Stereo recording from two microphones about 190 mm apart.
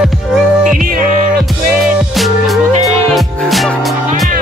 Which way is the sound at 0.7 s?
45° right (ahead or behind).